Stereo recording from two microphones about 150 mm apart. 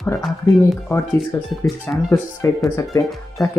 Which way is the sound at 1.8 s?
15° left (ahead or behind).